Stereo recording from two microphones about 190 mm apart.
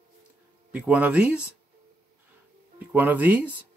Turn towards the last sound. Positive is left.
turn(degrees=-10)  # may be behind; listen again after turning